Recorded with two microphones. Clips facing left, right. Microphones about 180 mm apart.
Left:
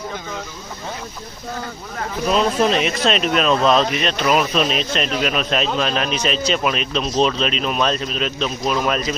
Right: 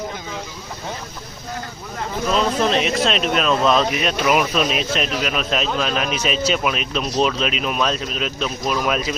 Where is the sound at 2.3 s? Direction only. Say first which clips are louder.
Left 2 dB; centre (ahead or behind).